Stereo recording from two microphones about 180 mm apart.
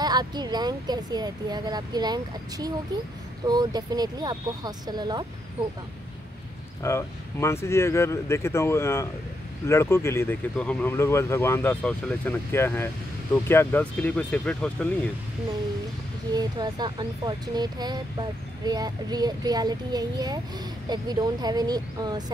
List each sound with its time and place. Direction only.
0.0 s speech: 25° right (ahead or behind)
6.8 s speech: 15° left (ahead or behind)
16.3 s speech: 20° right (ahead or behind)